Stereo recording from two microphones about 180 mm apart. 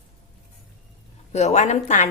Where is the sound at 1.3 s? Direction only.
40° left (ahead or behind).